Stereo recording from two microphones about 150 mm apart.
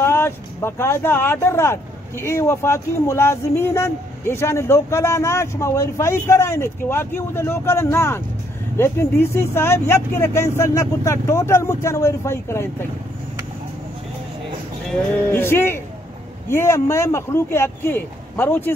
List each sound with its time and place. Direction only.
0.0 s speech: 15° left (ahead or behind)
14.9 s speech: 10° left (ahead or behind)